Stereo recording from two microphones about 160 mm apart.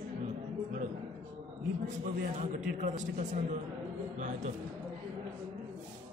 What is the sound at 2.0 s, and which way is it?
A man's voice, 55° right (ahead or behind).